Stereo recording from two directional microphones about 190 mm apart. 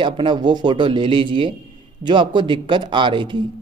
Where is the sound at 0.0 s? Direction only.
25° right (ahead or behind).